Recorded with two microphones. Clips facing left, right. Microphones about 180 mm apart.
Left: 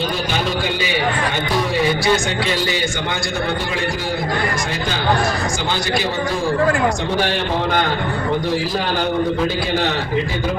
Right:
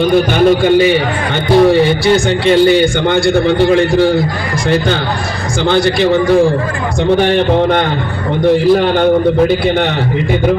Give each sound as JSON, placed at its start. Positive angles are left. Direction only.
{"t": 0.0, "sound": "a man's voice", "side_deg": -55}
{"t": 5.7, "sound": "a man's voice", "side_deg": -60}